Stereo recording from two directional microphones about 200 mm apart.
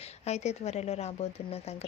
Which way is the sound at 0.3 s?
35° left (ahead or behind).